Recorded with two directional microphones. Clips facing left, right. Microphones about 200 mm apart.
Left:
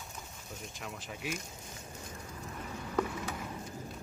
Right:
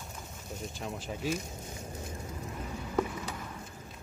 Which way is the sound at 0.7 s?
30° right (ahead or behind).